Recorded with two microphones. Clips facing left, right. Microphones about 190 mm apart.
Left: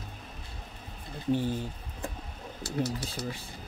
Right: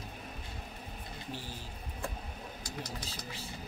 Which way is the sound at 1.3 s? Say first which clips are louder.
Left 17 dB; 60° left (ahead or behind).